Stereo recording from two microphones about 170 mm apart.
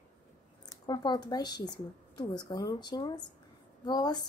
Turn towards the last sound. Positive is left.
turn(degrees=25)  # may be behind; listen again after turning